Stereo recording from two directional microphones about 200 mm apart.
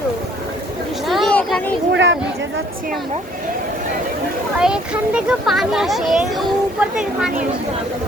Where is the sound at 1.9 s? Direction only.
65° right (ahead or behind).